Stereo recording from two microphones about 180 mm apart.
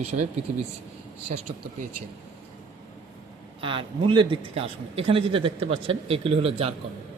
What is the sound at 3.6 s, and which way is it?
Speech, 30° right (ahead or behind).